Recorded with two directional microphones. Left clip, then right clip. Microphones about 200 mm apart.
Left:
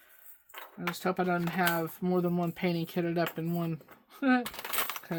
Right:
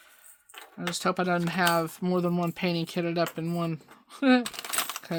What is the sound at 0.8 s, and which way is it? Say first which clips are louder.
Speech: right 3 dB; 30° right (ahead or behind).